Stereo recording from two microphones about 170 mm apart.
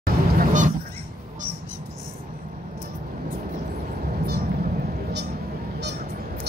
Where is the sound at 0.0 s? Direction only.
50° right (ahead or behind).